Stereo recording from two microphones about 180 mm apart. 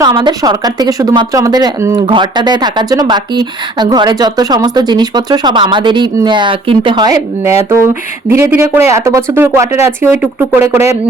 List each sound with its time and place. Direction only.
0.1 s speech: 25° right (ahead or behind)